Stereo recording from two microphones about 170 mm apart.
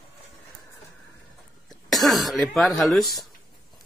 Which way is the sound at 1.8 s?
Centre (ahead or behind).